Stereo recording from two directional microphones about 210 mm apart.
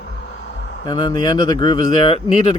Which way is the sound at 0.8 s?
20° left (ahead or behind).